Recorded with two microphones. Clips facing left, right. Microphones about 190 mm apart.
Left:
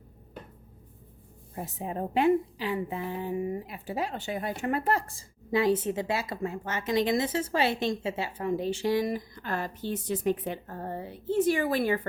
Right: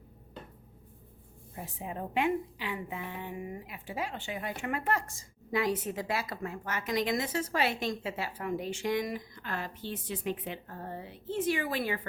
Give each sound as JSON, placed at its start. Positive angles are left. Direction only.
{"t": 1.5, "sound": "a woman's voice", "side_deg": 40}